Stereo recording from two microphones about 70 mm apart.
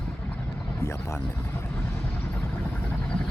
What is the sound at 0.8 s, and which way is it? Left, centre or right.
Speech, left.